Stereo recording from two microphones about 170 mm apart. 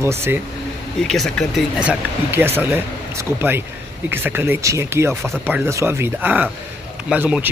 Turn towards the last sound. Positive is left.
turn(degrees=-10)  # may be behind; listen again after turning